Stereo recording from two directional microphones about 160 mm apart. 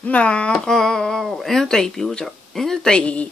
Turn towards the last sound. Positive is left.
turn(degrees=5)  # may be behind; listen again after turning